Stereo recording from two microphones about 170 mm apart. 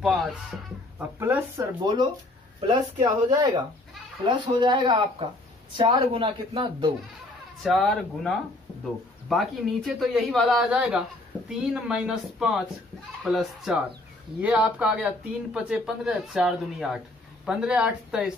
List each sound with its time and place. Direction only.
0.0 s speech: centre (ahead or behind)
2.6 s speech: 25° right (ahead or behind)
7.6 s speech: centre (ahead or behind)